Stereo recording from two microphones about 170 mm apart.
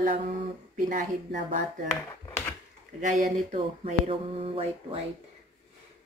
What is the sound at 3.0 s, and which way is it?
Speech, 45° right (ahead or behind).